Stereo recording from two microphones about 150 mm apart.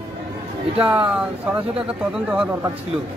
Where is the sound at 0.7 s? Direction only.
10° right (ahead or behind).